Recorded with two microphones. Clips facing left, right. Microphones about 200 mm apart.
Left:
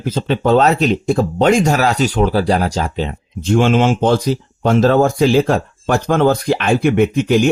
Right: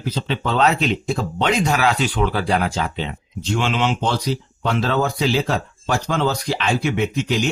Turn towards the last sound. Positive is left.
turn(degrees=55)  # may be behind; listen again after turning